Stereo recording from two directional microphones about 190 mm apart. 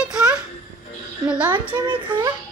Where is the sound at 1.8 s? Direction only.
25° right (ahead or behind).